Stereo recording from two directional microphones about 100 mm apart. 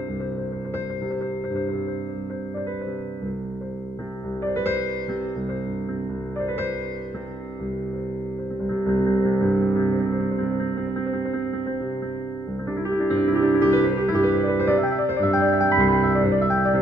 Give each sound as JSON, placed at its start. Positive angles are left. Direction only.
{"t": 8.8, "sound": "music", "side_deg": 30}
{"t": 13.0, "sound": "music", "side_deg": 15}
{"t": 13.7, "sound": "music", "side_deg": 25}